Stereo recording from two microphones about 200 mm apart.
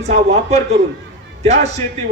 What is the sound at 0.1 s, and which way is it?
A man's voice, 35° right (ahead or behind).